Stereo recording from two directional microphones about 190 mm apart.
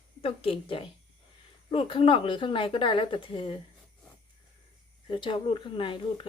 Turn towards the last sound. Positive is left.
turn(degrees=25)  # may be behind; listen again after turning